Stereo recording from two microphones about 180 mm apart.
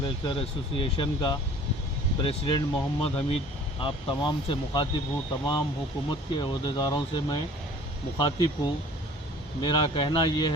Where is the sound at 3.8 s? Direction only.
30° left (ahead or behind).